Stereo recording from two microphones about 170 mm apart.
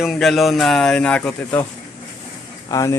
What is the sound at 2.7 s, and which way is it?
Speech, 20° left (ahead or behind).